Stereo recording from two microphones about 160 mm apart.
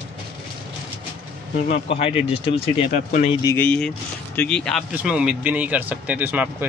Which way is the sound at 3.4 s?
20° left (ahead or behind).